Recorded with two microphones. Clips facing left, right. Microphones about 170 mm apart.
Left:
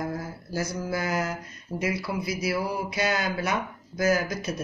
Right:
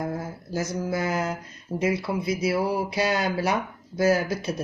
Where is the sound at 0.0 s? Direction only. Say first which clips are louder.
Right 2 dB; 25° right (ahead or behind).